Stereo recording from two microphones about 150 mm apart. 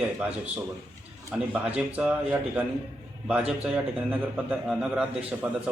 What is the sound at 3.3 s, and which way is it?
A man's voice, 5° right (ahead or behind).